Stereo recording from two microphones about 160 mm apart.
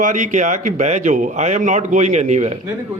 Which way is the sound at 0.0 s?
50° right (ahead or behind).